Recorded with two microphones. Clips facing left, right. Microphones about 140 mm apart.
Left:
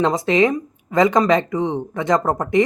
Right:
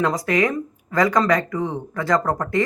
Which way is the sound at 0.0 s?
25° left (ahead or behind).